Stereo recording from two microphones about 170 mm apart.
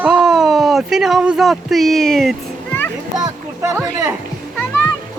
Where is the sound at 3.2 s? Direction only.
20° right (ahead or behind).